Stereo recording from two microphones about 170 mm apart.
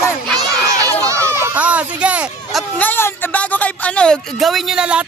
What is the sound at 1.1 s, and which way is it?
Speech, 15° right (ahead or behind).